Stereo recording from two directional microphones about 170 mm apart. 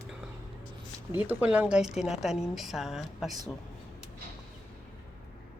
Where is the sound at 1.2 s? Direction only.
10° right (ahead or behind).